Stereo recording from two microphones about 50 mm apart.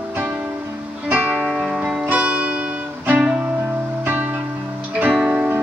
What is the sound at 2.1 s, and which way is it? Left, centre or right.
Music, right.